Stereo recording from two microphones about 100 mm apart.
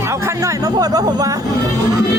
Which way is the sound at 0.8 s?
40° right (ahead or behind).